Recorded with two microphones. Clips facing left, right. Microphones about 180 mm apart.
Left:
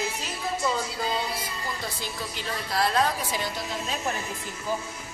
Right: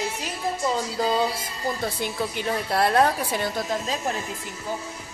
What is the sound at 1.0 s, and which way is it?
A woman's voice, 50° right (ahead or behind).